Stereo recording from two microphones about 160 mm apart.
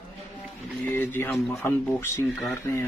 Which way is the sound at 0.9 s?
15° left (ahead or behind).